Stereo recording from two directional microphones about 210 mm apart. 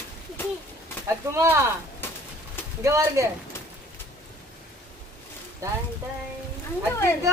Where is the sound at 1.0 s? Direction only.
15° right (ahead or behind).